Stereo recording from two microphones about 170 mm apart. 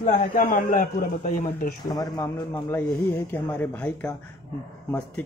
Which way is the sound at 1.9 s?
20° left (ahead or behind).